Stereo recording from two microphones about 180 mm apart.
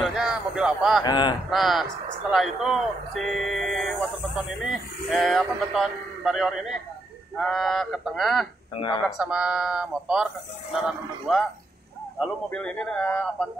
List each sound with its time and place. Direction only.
0.0 s a sound: 5° right (ahead or behind)
1.0 s speech: 25° left (ahead or behind)
1.5 s speech: centre (ahead or behind)
12.4 s speech: 5° left (ahead or behind)